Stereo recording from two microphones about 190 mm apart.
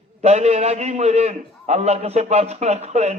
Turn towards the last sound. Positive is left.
turn(degrees=-35)  # may be behind; listen again after turning